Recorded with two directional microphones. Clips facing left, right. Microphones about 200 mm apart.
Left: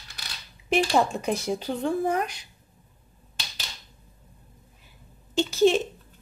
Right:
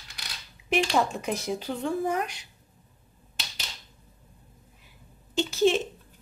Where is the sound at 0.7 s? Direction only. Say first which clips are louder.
Left 2 dB; 35° left (ahead or behind).